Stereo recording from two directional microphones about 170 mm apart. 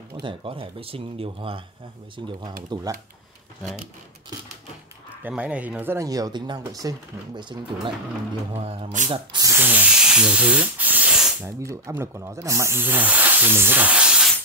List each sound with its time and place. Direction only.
0.2 s speech: 30° right (ahead or behind)
5.2 s speech: 10° right (ahead or behind); by 9.1 s 40° right (ahead or behind)
9.1 s speech: 25° right (ahead or behind); by 11.3 s 5° right (ahead or behind)
11.4 s speech: 15° right (ahead or behind)